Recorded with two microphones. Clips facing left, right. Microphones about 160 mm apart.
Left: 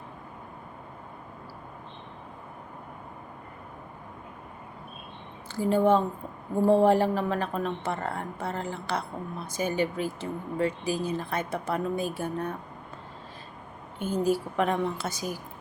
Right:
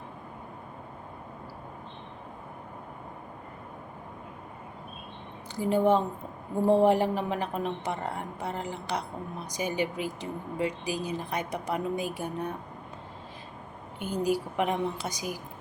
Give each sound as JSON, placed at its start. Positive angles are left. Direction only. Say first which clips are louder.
{"t": 5.5, "sound": "a woman's voice", "louder": "left 1 dB", "side_deg": -15}
{"t": 14.3, "sound": "a woman's voice", "louder": "left 1 dB", "side_deg": -15}